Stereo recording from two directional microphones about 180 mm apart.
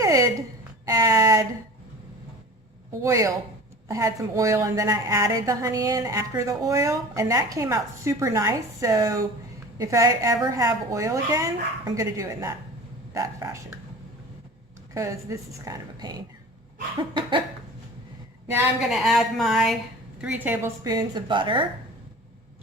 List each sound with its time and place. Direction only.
0.0 s a sound: 20° right (ahead or behind)
3.0 s a woman's voice: 15° right (ahead or behind)
14.9 s a woman's voice: 15° right (ahead or behind)
18.8 s a woman's voice: centre (ahead or behind); by 21.7 s 25° right (ahead or behind)